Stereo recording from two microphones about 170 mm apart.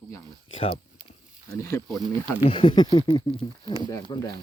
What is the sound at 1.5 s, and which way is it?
Speech, 20° left (ahead or behind).